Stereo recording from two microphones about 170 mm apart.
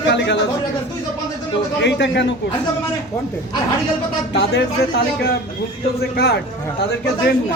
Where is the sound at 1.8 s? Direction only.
90° left.